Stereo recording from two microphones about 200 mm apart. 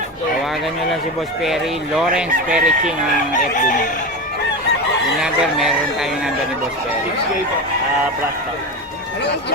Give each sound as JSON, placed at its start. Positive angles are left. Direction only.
{"t": 2.1, "sound": "speech", "side_deg": -5}
{"t": 3.5, "sound": "chicken", "side_deg": 40}
{"t": 5.2, "sound": "speech", "side_deg": -5}